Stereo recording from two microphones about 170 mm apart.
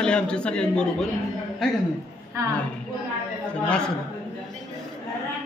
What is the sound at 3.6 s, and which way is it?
Speech, 5° left (ahead or behind).